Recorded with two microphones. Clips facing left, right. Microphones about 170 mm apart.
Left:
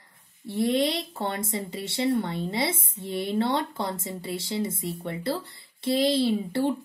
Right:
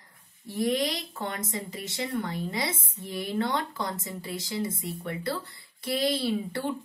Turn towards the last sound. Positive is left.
turn(degrees=25)  # may be behind; listen again after turning